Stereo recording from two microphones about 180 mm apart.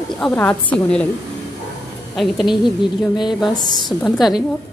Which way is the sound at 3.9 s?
Centre (ahead or behind).